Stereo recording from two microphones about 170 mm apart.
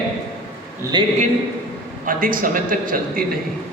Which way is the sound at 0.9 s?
25° right (ahead or behind).